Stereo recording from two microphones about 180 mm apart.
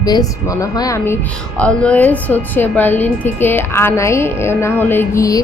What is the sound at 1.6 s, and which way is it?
A woman's voice, 5° left (ahead or behind).